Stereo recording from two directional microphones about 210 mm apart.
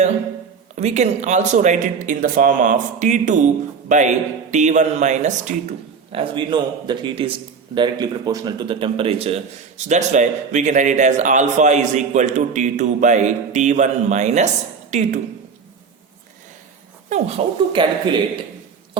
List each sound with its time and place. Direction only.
0.8 s a man's voice: 30° right (ahead or behind)
17.1 s a man's voice: 30° right (ahead or behind)